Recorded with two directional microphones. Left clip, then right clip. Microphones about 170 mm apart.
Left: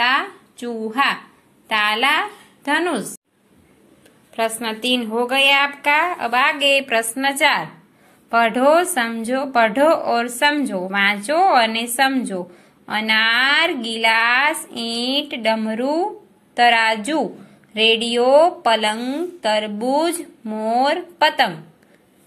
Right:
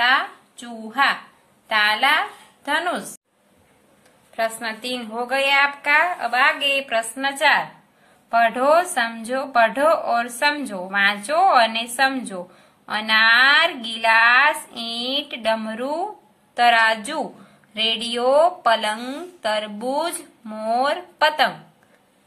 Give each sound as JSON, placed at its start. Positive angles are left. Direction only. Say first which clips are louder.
{"t": 0.0, "sound": "a woman's voice", "louder": "even", "side_deg": 15}
{"t": 4.4, "sound": "a woman's voice", "louder": "left 2 dB", "side_deg": 15}